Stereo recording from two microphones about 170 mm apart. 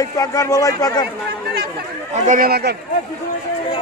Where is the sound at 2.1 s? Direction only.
45° right (ahead or behind).